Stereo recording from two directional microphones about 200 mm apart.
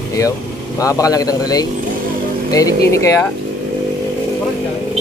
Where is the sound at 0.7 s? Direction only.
15° left (ahead or behind).